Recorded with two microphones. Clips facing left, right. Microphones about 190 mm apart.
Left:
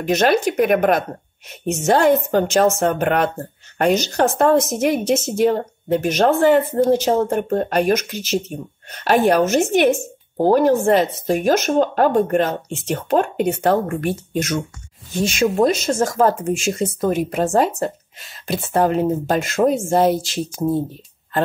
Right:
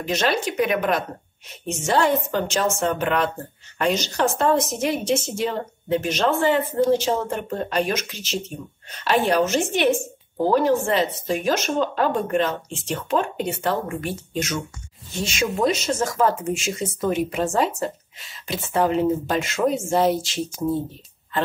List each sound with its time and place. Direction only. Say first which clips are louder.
0.0 s a woman's voice: left 6 dB; 55° left (ahead or behind)
20.6 s speech: left 3 dB; 35° left (ahead or behind)